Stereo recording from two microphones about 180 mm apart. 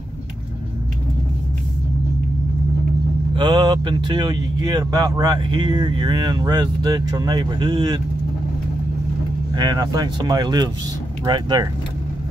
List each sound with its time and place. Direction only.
3.3 s speech: 25° right (ahead or behind)
9.5 s speech: 20° right (ahead or behind)